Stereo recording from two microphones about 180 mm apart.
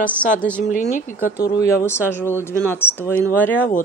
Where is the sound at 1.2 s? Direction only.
55° left (ahead or behind).